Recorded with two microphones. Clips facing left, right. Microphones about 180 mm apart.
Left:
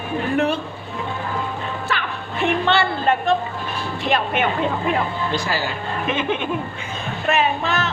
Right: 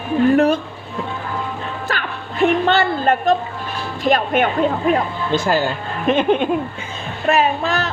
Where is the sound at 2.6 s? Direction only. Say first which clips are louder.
Right 2 dB; 45° right (ahead or behind).